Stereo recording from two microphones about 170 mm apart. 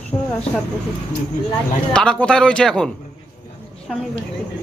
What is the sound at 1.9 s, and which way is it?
Speech, 5° left (ahead or behind).